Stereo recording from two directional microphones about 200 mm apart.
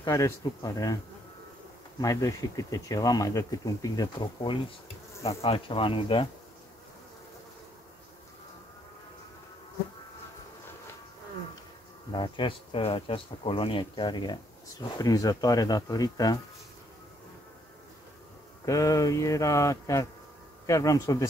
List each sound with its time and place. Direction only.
0.0 s speech: 15° left (ahead or behind)
2.0 s speech: 15° left (ahead or behind)
12.1 s speech: 25° left (ahead or behind)
18.7 s speech: 15° left (ahead or behind)